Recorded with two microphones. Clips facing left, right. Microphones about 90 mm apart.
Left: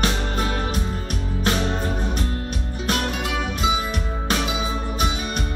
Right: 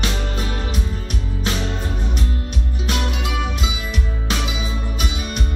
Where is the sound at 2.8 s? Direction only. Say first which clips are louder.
Left 1 dB; 40° left (ahead or behind).